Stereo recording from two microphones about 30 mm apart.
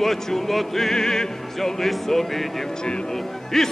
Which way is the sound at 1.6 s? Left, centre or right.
Centre.